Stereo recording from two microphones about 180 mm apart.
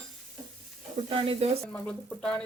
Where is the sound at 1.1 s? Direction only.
35° right (ahead or behind).